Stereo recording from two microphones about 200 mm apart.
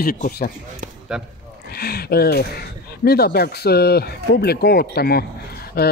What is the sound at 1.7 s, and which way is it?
A man's voice, 50° left (ahead or behind).